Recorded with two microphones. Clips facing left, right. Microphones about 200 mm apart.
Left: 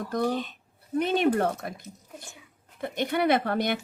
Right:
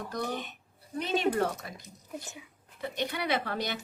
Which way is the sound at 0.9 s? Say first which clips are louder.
Left 5 dB; 55° left (ahead or behind).